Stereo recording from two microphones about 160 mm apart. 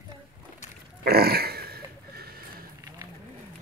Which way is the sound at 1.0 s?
70° right (ahead or behind).